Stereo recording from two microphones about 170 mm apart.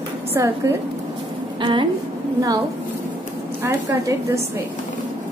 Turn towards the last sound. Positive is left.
turn(degrees=-20)  # may be behind; listen again after turning